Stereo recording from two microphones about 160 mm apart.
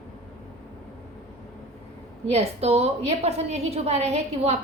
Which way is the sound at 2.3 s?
40° right (ahead or behind).